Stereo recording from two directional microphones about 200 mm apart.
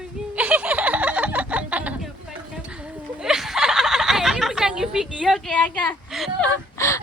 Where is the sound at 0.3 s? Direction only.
5° right (ahead or behind).